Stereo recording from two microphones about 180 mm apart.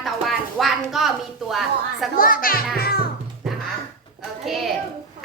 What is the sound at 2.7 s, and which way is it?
Music, 55° left (ahead or behind).